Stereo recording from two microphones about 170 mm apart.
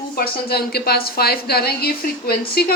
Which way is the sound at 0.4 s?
70° left (ahead or behind).